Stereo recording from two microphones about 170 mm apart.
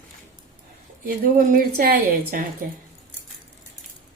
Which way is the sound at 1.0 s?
55° right (ahead or behind).